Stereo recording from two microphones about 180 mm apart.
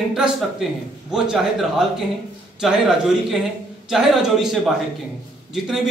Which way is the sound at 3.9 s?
Centre (ahead or behind).